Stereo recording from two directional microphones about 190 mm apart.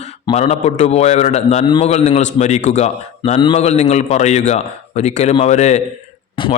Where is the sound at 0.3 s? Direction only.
35° left (ahead or behind).